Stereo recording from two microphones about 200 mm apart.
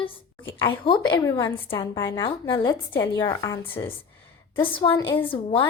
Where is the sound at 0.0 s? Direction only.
25° left (ahead or behind).